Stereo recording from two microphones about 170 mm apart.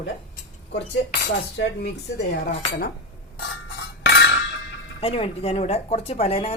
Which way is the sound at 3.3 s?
90° left.